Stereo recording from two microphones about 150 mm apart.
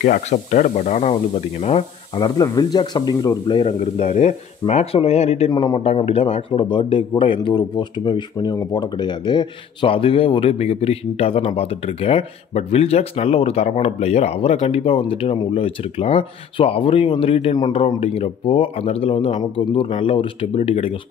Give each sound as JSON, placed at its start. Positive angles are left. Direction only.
{"t": 0.0, "sound": "speech", "side_deg": 55}
{"t": 2.1, "sound": "a man's voice", "side_deg": 25}
{"t": 5.5, "sound": "speech", "side_deg": 30}
{"t": 5.9, "sound": "a man's voice", "side_deg": 40}